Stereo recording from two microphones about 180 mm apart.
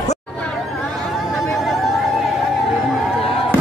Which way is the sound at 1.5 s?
Centre (ahead or behind).